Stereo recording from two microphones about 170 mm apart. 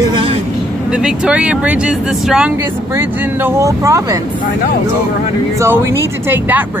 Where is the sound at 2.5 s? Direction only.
15° right (ahead or behind).